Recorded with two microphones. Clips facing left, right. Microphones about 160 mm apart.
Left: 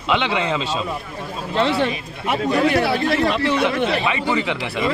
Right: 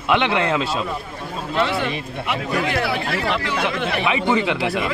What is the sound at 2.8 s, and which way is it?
Speech, 30° left (ahead or behind).